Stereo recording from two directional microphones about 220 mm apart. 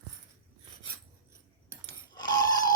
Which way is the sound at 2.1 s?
20° left (ahead or behind).